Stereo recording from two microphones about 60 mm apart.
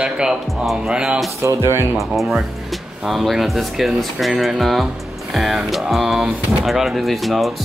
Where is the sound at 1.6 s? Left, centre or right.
Right.